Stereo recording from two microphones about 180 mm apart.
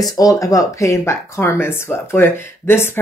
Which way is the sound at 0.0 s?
20° left (ahead or behind).